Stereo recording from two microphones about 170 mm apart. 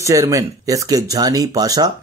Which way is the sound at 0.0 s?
20° right (ahead or behind).